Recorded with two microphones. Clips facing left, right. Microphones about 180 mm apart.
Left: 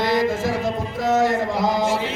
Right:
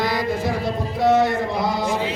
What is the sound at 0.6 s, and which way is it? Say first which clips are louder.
Music: right 3 dB; 45° left (ahead or behind).